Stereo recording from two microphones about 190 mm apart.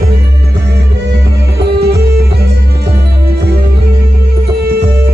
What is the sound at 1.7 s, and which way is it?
Music, 60° right (ahead or behind).